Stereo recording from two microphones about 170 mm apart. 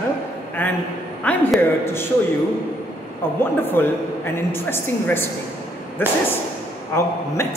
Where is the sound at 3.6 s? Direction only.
10° left (ahead or behind).